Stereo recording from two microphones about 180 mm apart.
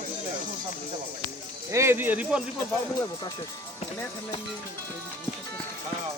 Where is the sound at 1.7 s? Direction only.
15° right (ahead or behind).